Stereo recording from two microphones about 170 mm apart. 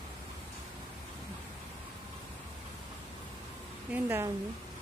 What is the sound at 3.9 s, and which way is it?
Speech, 15° right (ahead or behind).